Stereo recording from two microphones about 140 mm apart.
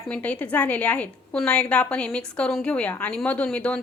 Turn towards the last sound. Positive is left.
turn(degrees=10)  # may be behind; listen again after turning